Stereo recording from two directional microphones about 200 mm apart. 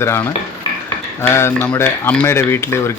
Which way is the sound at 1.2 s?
15° left (ahead or behind).